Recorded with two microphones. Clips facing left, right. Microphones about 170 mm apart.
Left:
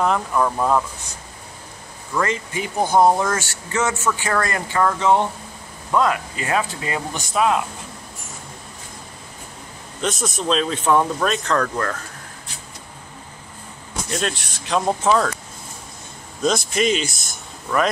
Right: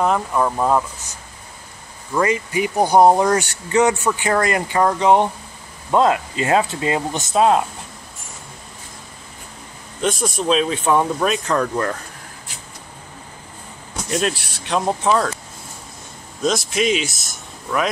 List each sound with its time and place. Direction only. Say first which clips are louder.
0.0 s speech: right 1 dB; 10° right (ahead or behind)
2.1 s speech: right 4 dB; 10° right (ahead or behind); by 7.6 s 30° right (ahead or behind)
10.0 s speech: right 3 dB; centre (ahead or behind)
14.2 s speech: right 3 dB; centre (ahead or behind)
16.4 s speech: even; centre (ahead or behind)